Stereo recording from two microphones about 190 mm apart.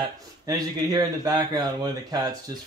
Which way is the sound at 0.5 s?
20° right (ahead or behind).